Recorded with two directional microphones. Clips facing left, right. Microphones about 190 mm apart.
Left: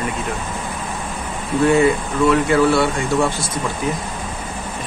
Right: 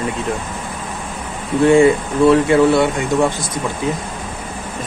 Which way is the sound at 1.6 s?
25° right (ahead or behind).